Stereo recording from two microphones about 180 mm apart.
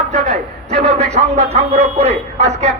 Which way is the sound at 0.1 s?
40° right (ahead or behind).